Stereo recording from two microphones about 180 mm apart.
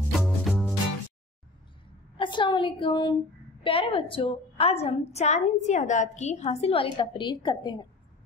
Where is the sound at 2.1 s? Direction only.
25° left (ahead or behind).